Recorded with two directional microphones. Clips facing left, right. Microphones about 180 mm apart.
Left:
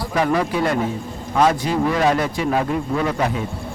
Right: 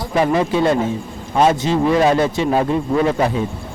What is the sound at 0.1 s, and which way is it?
A man's voice, 25° right (ahead or behind).